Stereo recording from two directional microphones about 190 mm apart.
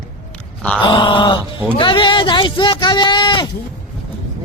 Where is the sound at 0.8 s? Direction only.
25° left (ahead or behind).